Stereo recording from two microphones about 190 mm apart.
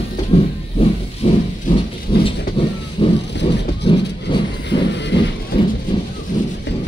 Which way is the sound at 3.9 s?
25° left (ahead or behind).